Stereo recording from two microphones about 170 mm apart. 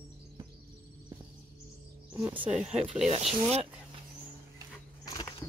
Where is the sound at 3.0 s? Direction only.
35° right (ahead or behind).